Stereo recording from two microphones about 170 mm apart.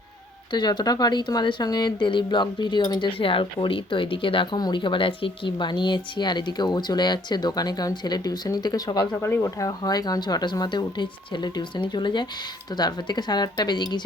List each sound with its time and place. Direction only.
0.5 s speech: 25° left (ahead or behind)